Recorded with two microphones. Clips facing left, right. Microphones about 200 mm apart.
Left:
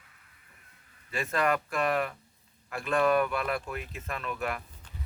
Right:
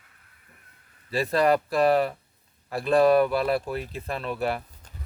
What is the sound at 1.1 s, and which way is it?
A man's voice, 35° right (ahead or behind).